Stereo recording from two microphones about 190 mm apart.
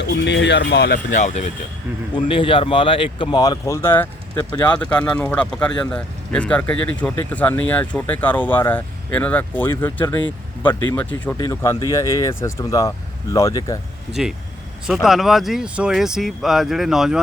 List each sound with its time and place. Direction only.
0.0 s speech: 65° left (ahead or behind)
1.1 s speech: 40° left (ahead or behind)
2.1 s speech: 25° left (ahead or behind)
14.2 s speech: centre (ahead or behind)